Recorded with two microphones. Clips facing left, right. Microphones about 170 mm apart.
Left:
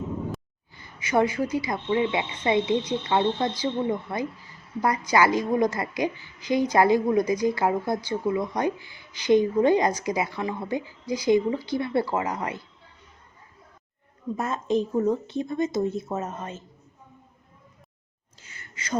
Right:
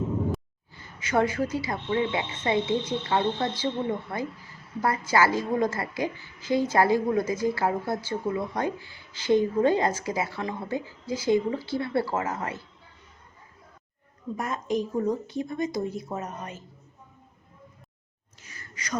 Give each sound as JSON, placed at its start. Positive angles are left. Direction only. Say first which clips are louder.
{"t": 0.8, "sound": "a woman's voice", "louder": "left 2 dB", "side_deg": 10}
{"t": 4.8, "sound": "a woman's voice", "louder": "left 2 dB", "side_deg": 15}
{"t": 14.3, "sound": "speech", "louder": "left 3 dB", "side_deg": 25}
{"t": 18.4, "sound": "gasp", "louder": "left 2 dB", "side_deg": 25}